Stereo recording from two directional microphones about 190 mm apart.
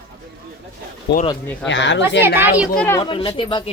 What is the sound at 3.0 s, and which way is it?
Speech, 25° left (ahead or behind).